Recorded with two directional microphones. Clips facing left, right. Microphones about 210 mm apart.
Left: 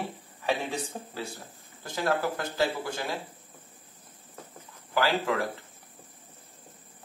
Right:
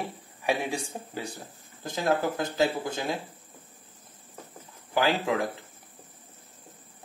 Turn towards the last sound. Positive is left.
turn(degrees=-20)  # may be behind; listen again after turning